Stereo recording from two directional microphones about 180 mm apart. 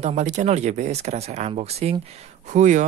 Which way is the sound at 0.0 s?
40° right (ahead or behind).